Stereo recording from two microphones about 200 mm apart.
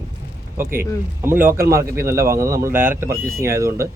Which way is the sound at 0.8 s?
10° right (ahead or behind).